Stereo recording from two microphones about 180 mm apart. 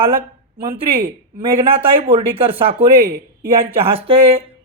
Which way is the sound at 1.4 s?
30° right (ahead or behind).